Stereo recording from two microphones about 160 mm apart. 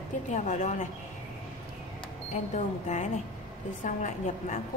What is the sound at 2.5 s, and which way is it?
A woman's voice, 50° left (ahead or behind).